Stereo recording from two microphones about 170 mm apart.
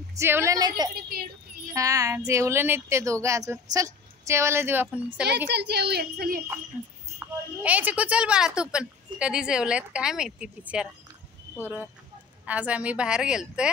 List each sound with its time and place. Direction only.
0.2 s a woman's voice: 15° right (ahead or behind)
5.5 s a woman's voice: 75° right (ahead or behind)
7.6 s a woman's voice: 10° right (ahead or behind)